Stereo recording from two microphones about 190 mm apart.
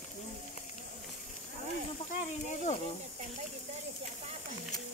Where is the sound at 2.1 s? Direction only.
35° left (ahead or behind).